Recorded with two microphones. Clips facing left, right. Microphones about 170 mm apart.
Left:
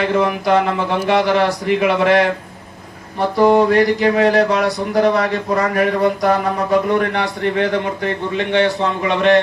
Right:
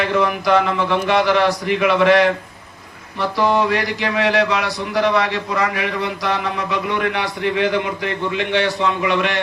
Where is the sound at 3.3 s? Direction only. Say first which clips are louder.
Left 6 dB; 40° left (ahead or behind).